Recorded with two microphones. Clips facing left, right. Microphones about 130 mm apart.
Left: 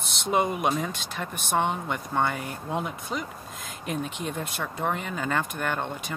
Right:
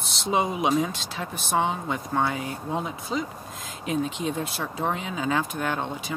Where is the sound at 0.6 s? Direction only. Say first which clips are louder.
Right 3 dB; 5° right (ahead or behind).